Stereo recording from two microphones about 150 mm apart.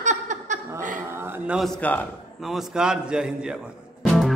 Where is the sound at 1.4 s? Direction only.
Centre (ahead or behind).